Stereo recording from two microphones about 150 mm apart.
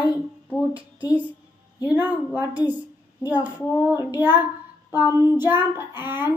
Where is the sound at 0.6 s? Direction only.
10° right (ahead or behind).